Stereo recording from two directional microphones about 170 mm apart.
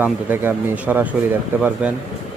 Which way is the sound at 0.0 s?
10° right (ahead or behind).